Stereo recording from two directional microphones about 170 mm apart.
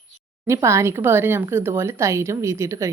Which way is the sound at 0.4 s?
15° right (ahead or behind).